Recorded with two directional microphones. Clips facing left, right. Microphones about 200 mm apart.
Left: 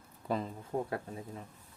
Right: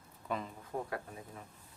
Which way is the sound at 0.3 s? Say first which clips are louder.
Left 5 dB; 35° left (ahead or behind).